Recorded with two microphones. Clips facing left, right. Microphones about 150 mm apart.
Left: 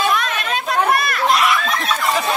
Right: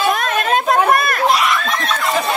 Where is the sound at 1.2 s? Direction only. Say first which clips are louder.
Left 1 dB; centre (ahead or behind).